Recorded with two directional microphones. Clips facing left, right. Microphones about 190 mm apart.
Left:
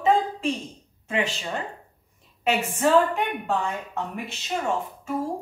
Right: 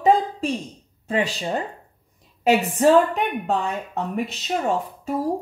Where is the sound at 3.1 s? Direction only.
20° right (ahead or behind).